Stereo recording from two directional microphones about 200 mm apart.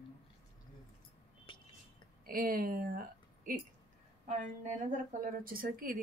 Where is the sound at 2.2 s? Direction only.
45° right (ahead or behind).